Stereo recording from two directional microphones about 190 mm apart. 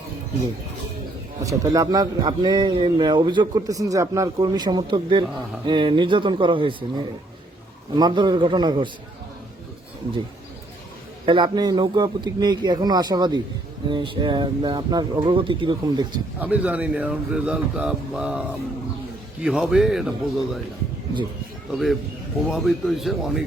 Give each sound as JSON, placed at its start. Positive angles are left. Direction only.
{"t": 1.7, "sound": "a man's voice", "side_deg": -20}
{"t": 11.3, "sound": "a man's voice", "side_deg": -25}
{"t": 16.4, "sound": "a man's voice", "side_deg": -5}
{"t": 21.7, "sound": "a man's voice", "side_deg": 0}